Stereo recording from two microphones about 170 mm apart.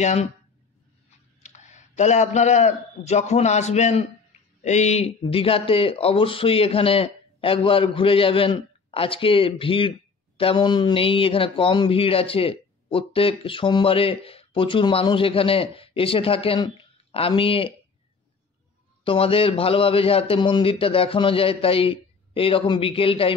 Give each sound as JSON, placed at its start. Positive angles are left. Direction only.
{"t": 0.0, "sound": "speech", "side_deg": 40}
{"t": 1.4, "sound": "a man's voice", "side_deg": 45}
{"t": 19.0, "sound": "speech", "side_deg": 35}